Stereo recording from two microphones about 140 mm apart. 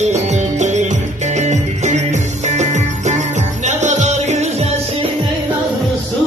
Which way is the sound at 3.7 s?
55° right (ahead or behind).